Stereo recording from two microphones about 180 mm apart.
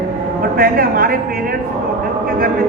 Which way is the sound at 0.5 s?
55° right (ahead or behind).